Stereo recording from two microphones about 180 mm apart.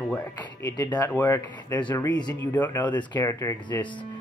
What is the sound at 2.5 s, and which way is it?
Speech, 10° left (ahead or behind).